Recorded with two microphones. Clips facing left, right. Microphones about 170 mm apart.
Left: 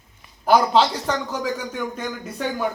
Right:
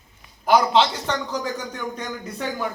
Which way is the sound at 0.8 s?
5° left (ahead or behind).